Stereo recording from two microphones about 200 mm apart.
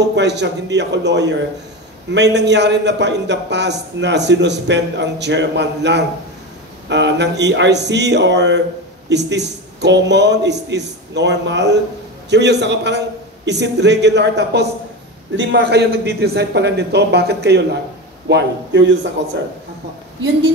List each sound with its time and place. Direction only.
0.0 s a man's voice: 60° right (ahead or behind)
18.3 s a man's voice: 65° right (ahead or behind)